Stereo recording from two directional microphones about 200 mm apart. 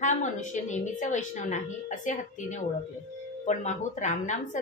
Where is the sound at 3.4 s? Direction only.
35° left (ahead or behind).